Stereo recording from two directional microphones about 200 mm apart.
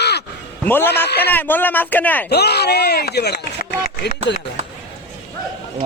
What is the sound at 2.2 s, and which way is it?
Speech, 55° left (ahead or behind).